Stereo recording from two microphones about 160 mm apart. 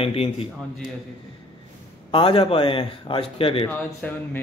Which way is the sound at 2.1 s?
35° left (ahead or behind).